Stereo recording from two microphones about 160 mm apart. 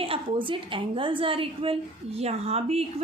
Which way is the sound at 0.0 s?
35° right (ahead or behind).